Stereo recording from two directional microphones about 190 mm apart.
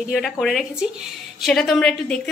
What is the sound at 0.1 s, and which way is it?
A woman's voice, centre (ahead or behind).